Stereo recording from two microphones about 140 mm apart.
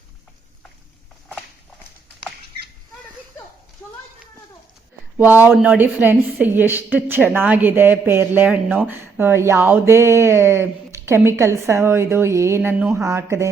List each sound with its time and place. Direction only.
5.1 s a woman's voice: 15° right (ahead or behind)